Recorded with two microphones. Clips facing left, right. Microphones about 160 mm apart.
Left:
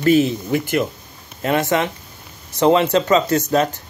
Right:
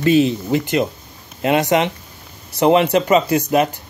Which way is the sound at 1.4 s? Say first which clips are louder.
Right 2 dB; 15° right (ahead or behind).